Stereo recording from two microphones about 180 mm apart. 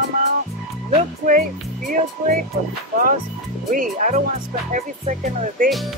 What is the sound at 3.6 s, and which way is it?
Speech, 45° right (ahead or behind).